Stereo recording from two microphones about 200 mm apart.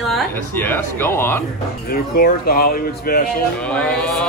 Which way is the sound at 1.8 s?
45° left (ahead or behind).